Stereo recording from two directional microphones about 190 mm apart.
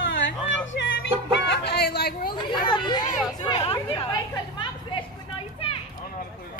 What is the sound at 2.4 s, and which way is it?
Children playing, 25° left (ahead or behind).